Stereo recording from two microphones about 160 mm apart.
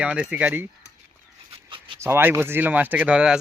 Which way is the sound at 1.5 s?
30° right (ahead or behind).